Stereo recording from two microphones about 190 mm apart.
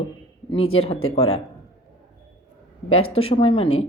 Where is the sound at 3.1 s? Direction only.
30° left (ahead or behind).